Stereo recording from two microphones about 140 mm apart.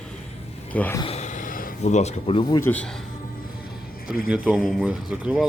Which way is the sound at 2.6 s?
10° left (ahead or behind).